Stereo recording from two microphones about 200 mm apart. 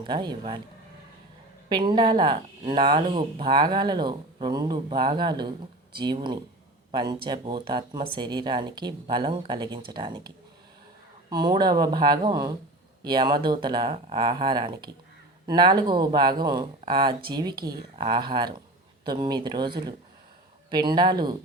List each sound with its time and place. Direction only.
0.0 s speech: 20° right (ahead or behind)
1.7 s speech: 20° right (ahead or behind)